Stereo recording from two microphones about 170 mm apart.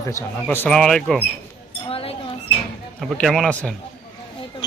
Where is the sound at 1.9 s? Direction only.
35° left (ahead or behind).